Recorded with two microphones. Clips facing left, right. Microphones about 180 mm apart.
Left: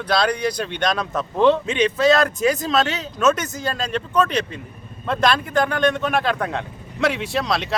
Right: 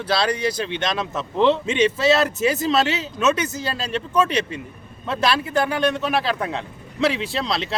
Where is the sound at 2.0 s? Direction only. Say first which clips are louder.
Left 5 dB; 5° right (ahead or behind).